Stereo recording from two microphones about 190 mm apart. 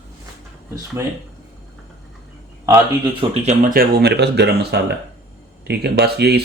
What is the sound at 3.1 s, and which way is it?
Speech, 35° right (ahead or behind).